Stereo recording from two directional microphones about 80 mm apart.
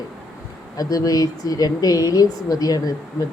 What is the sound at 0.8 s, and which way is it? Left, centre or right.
A woman's voice, left.